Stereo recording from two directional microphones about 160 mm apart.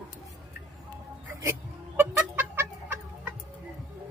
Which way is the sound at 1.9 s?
10° right (ahead or behind).